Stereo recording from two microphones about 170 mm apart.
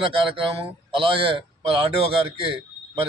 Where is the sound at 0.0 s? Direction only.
30° right (ahead or behind).